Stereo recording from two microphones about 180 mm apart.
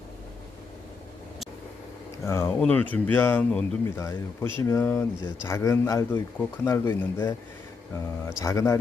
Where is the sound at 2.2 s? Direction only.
15° left (ahead or behind).